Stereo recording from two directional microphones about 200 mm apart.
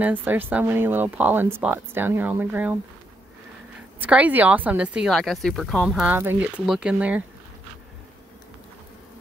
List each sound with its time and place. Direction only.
0.0 s speech: 10° right (ahead or behind)
4.0 s speech: 10° right (ahead or behind)